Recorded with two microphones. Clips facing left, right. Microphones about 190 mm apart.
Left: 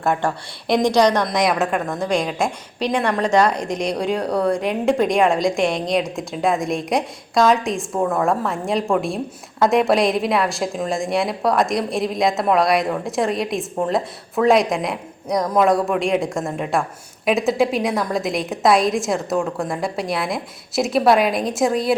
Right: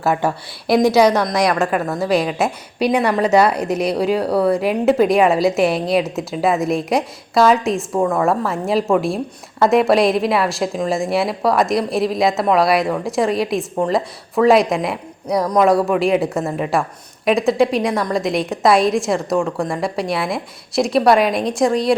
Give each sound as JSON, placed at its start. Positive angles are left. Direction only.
{"t": 0.0, "sound": "a woman's voice", "side_deg": -5}